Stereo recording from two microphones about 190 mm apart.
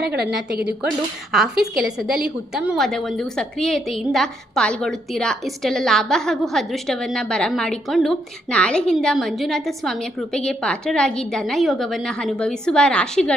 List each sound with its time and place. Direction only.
0.0 s a woman's voice: 60° right (ahead or behind)
1.3 s a woman's voice: centre (ahead or behind)